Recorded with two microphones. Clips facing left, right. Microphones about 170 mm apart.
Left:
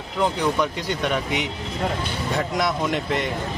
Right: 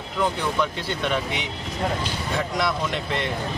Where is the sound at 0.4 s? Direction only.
15° left (ahead or behind).